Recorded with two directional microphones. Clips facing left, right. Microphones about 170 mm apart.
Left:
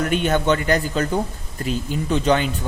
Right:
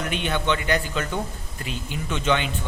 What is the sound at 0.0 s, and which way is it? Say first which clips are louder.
A man's voice: left 6 dB; 45° left (ahead or behind).